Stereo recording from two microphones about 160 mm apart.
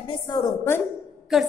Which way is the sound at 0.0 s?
30° left (ahead or behind).